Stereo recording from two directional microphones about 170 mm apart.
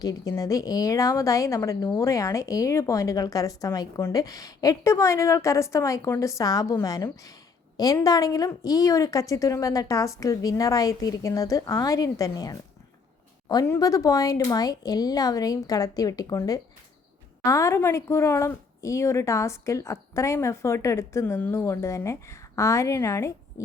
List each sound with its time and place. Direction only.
0.0 s a woman's voice: 20° left (ahead or behind)